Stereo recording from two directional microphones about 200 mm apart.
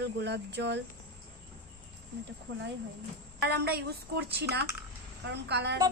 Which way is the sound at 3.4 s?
55° right (ahead or behind).